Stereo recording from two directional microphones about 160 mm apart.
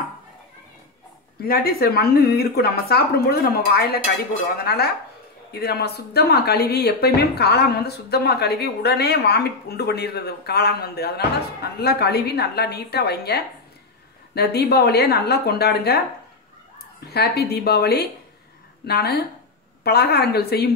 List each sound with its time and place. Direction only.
1.4 s a woman's voice: 70° left (ahead or behind)
17.0 s speech: 85° left